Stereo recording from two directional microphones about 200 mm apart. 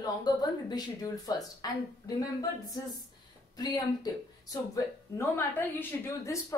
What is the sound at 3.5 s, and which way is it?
A woman's voice, 20° left (ahead or behind).